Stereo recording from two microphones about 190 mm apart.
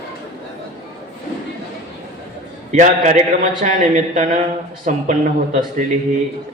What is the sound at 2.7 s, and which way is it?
A man's voice, 40° right (ahead or behind).